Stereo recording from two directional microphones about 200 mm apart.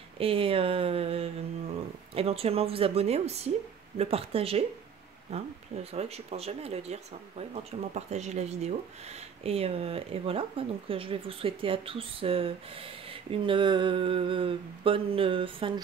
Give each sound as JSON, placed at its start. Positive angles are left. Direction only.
{"t": 0.2, "sound": "speech", "side_deg": -25}